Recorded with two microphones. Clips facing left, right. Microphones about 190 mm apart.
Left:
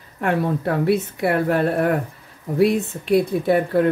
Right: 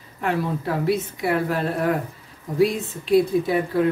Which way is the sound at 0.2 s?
55° left (ahead or behind).